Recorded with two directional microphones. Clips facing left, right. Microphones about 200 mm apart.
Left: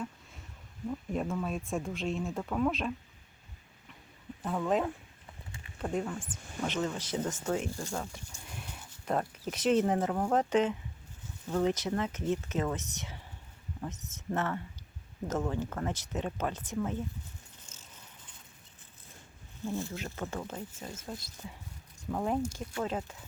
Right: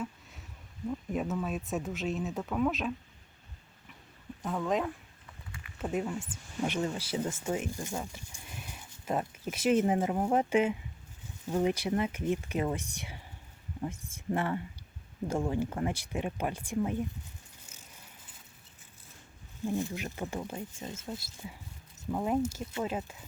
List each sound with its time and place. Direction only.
0.9 s speech: centre (ahead or behind)
4.4 s speech: centre (ahead or behind)
5.5 s a sound: 25° left (ahead or behind)
5.8 s speech: 10° right (ahead or behind)
8.7 s a sound: 5° right (ahead or behind)
9.5 s speech: 5° right (ahead or behind)
19.6 s speech: 15° right (ahead or behind)